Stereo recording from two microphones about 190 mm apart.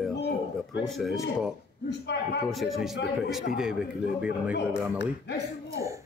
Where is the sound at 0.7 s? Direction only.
65° left (ahead or behind).